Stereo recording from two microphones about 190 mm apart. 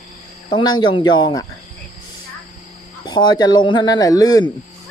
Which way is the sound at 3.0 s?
20° left (ahead or behind).